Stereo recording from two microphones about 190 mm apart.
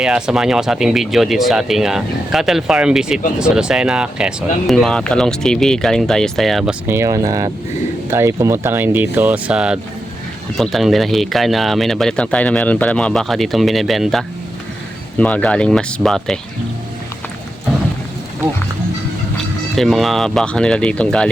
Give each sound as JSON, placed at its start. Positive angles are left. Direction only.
{"t": 0.0, "sound": "speech", "side_deg": -5}
{"t": 6.8, "sound": "speech", "side_deg": -15}
{"t": 19.7, "sound": "speech", "side_deg": 0}